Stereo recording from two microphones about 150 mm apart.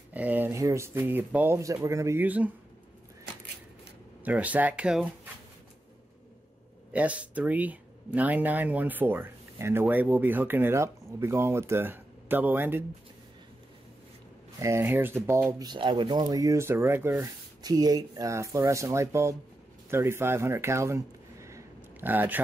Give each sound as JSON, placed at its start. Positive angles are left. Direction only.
{"t": 0.1, "sound": "speech", "side_deg": -10}
{"t": 4.2, "sound": "speech", "side_deg": -10}
{"t": 6.9, "sound": "speech", "side_deg": -10}
{"t": 14.6, "sound": "speech", "side_deg": -15}
{"t": 15.6, "sound": "speech", "side_deg": -30}